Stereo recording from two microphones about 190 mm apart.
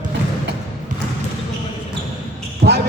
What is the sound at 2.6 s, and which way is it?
Basketball bounce, 60° right (ahead or behind).